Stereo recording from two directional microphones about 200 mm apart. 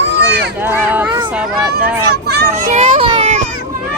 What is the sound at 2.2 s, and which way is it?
Children playing, 55° right (ahead or behind).